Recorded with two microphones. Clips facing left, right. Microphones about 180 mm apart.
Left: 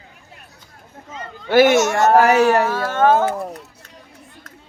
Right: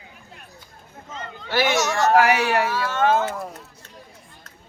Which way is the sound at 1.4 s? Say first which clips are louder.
Left 9 dB; 50° left (ahead or behind).